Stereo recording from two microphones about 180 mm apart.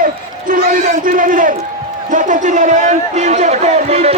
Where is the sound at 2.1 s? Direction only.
45° right (ahead or behind).